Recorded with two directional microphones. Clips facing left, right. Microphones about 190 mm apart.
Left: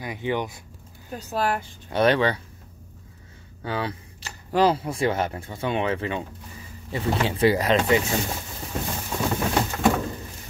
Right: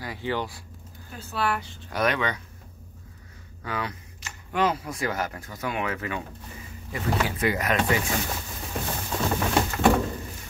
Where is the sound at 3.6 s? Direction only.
30° left (ahead or behind).